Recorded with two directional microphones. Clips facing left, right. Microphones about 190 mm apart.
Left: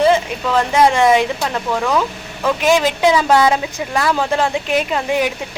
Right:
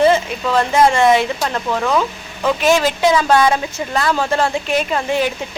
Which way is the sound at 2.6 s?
15° left (ahead or behind).